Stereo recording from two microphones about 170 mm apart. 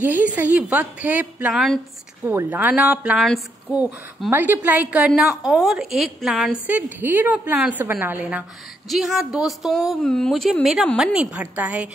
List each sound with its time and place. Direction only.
0.0 s a woman's voice: 10° right (ahead or behind)
2.2 s a woman's voice: 10° right (ahead or behind)
6.7 s a woman's voice: 10° right (ahead or behind)